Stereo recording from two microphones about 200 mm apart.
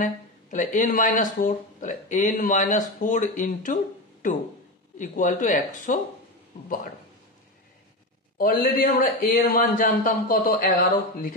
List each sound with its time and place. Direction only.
0.0 s speech: 40° left (ahead or behind)
8.4 s a man's voice: 45° left (ahead or behind)